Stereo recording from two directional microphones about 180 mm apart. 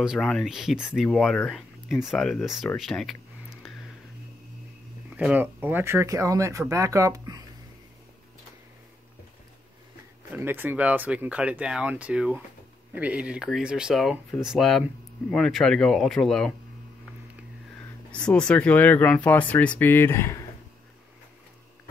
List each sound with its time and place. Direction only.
0.0 s speech: centre (ahead or behind)
5.1 s speech: 10° right (ahead or behind)
10.3 s speech: 10° right (ahead or behind)
18.1 s speech: 5° left (ahead or behind)